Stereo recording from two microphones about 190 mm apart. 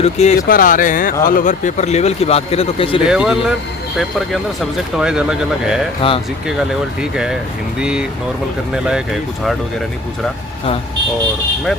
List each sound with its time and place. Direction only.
0.0 s speech: 35° left (ahead or behind)
0.3 s speech: 50° left (ahead or behind); by 3.0 s 30° left (ahead or behind)
3.1 s speech: 5° right (ahead or behind)
4.9 s speech: 5° right (ahead or behind)
6.0 s speech: 30° left (ahead or behind)
6.6 s speech: 5° right (ahead or behind)